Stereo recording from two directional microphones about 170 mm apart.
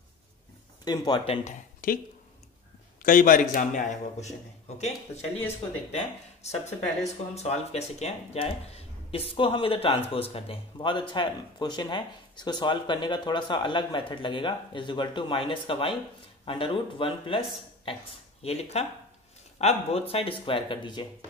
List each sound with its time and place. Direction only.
0.8 s speech: 25° left (ahead or behind); by 2.0 s 50° left (ahead or behind)
3.0 s speech: 50° left (ahead or behind); by 17.4 s 30° left (ahead or behind)
18.4 s speech: 40° left (ahead or behind)